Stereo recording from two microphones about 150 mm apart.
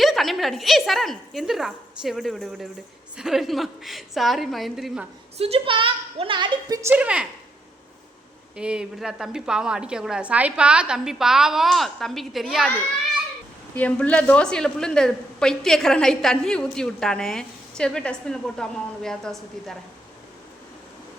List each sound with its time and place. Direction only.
0.0 s a woman's voice: centre (ahead or behind)
5.4 s a woman's voice: 40° right (ahead or behind)
6.8 s speech: 10° right (ahead or behind)
8.5 s a woman's voice: 5° right (ahead or behind)
13.7 s a woman's voice: 10° left (ahead or behind)